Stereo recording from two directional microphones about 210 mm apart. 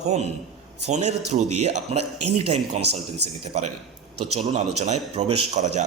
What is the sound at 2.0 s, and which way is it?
Speech, 90° right.